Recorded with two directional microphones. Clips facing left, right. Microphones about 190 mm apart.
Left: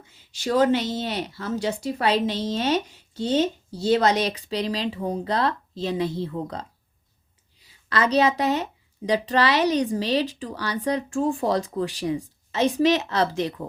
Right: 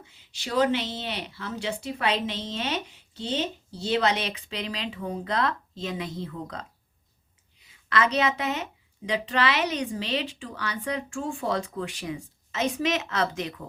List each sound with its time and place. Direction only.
0.3 s a woman's voice: 45° left (ahead or behind)